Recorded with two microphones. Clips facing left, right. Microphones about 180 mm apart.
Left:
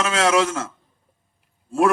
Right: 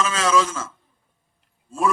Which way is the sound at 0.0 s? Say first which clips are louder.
Left 2 dB; 70° left (ahead or behind).